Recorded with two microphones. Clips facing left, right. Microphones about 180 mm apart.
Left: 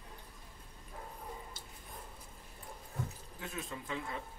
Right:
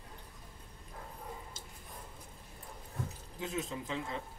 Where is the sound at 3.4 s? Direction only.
20° right (ahead or behind).